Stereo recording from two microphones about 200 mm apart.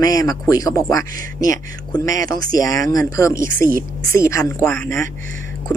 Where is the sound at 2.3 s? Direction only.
45° right (ahead or behind).